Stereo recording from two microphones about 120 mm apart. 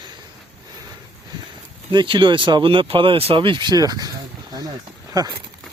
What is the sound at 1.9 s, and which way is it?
Speech, 45° right (ahead or behind).